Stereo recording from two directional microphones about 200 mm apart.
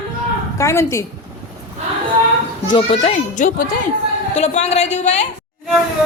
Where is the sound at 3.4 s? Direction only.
40° left (ahead or behind).